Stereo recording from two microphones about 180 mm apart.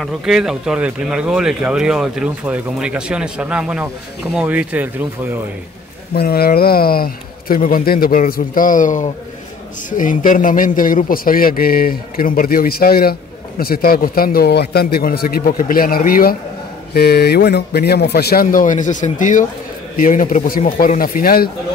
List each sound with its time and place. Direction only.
0.0 s speech: 5° right (ahead or behind)
6.1 s a man's voice: 60° left (ahead or behind)